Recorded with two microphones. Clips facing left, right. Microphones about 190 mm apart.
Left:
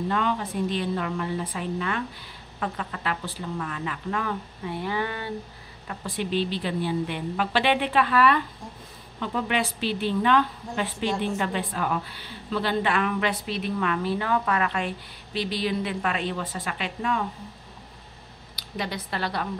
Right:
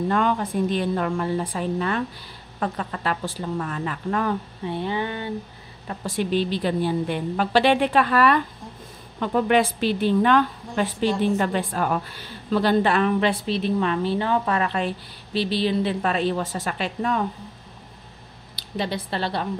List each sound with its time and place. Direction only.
0.1 s a woman's voice: 50° right (ahead or behind)
4.6 s a sound: 25° right (ahead or behind)
5.9 s a woman's voice: 45° right (ahead or behind)
18.6 s a woman's voice: 30° right (ahead or behind)